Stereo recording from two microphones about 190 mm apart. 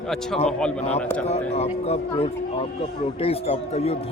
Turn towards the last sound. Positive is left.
turn(degrees=35)  # may be behind; listen again after turning